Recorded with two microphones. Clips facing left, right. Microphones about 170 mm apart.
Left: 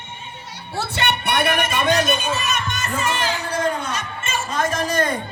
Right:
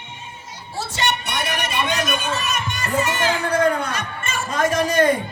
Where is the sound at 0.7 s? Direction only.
60° left (ahead or behind); by 2.2 s 30° left (ahead or behind).